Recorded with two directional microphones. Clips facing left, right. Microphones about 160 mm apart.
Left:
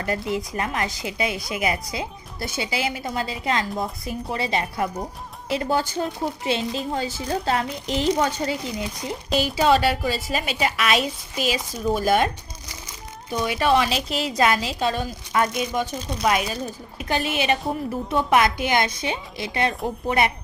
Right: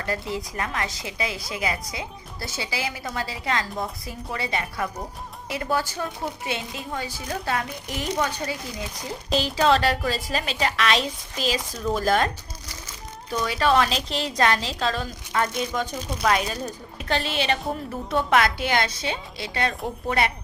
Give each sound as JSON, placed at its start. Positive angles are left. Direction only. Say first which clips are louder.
{"t": 0.0, "sound": "a woman's voice", "louder": "left 3 dB", "side_deg": 20}